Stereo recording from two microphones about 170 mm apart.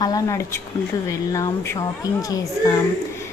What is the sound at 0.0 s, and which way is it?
A woman's voice, 20° left (ahead or behind).